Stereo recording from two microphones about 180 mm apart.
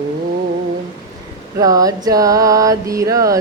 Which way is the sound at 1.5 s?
20° right (ahead or behind).